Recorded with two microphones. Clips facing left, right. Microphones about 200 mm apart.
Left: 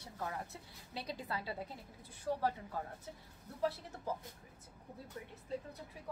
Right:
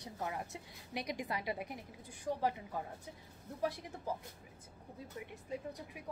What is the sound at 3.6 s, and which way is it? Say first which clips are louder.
Speech: left 1 dB; 15° right (ahead or behind).